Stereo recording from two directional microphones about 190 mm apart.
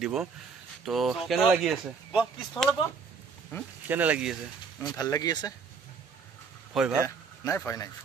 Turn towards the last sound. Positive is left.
turn(degrees=15)  # may be behind; listen again after turning